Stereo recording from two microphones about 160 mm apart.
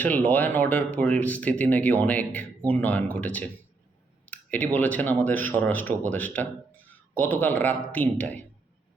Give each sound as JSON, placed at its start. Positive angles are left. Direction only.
{"t": 0.3, "sound": "speech", "side_deg": 10}